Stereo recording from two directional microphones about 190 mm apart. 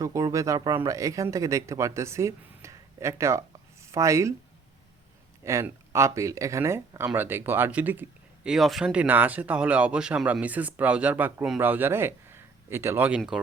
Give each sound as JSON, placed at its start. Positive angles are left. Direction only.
{"t": 0.0, "sound": "speech", "side_deg": -20}
{"t": 5.4, "sound": "speech", "side_deg": -15}